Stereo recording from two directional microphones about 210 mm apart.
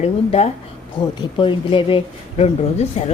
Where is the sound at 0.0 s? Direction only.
30° left (ahead or behind).